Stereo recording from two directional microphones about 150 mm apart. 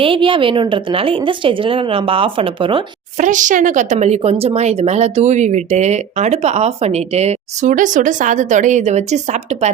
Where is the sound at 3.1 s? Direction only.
55° right (ahead or behind).